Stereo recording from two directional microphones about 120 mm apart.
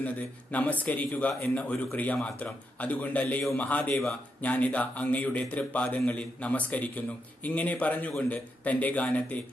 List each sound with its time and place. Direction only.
0.0 s a man's voice: 10° left (ahead or behind)